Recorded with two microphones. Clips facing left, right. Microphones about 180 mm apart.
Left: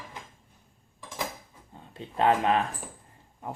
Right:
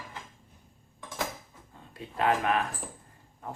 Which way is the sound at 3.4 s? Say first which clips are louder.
Left 3 dB; 15° left (ahead or behind).